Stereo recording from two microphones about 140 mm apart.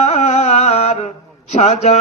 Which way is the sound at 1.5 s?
50° left (ahead or behind).